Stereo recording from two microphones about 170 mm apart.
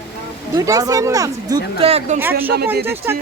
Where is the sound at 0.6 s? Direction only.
20° right (ahead or behind).